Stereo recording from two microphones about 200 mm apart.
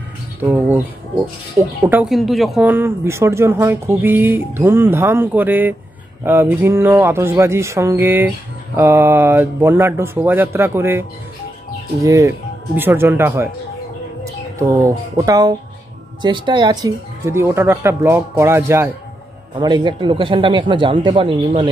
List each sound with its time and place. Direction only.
0.4 s speech: 10° right (ahead or behind)
14.6 s speech: 15° right (ahead or behind)